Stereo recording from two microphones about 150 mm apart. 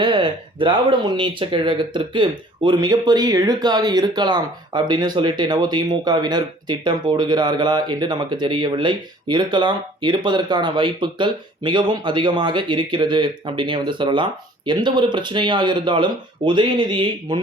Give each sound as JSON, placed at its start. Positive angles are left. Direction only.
{"t": 0.0, "sound": "speech", "side_deg": -35}